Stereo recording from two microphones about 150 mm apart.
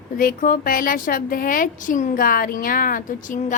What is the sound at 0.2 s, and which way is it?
A woman's voice, 70° left (ahead or behind).